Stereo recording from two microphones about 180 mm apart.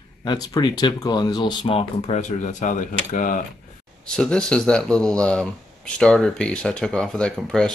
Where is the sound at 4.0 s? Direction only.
5° left (ahead or behind).